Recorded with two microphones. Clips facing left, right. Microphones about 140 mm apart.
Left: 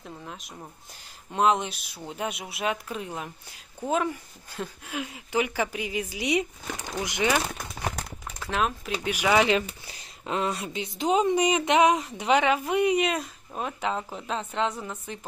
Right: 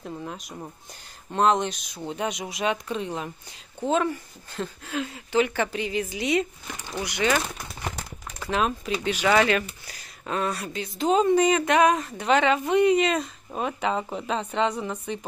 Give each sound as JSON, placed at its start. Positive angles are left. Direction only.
{"t": 0.0, "sound": "a sound", "side_deg": -5}
{"t": 1.3, "sound": "speech", "side_deg": 5}
{"t": 8.4, "sound": "speech", "side_deg": 0}